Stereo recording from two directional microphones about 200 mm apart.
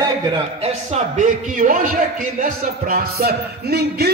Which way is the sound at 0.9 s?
40° right (ahead or behind).